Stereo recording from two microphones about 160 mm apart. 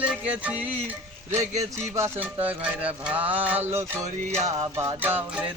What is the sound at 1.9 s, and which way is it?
Music, 15° right (ahead or behind).